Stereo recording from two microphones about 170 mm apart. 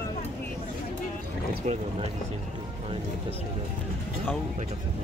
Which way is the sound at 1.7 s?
40° right (ahead or behind).